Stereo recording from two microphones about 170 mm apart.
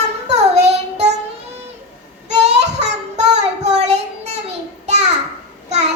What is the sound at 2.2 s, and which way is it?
Child singing, 40° right (ahead or behind).